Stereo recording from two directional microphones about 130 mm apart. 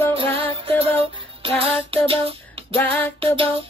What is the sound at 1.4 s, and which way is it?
Music, 45° right (ahead or behind).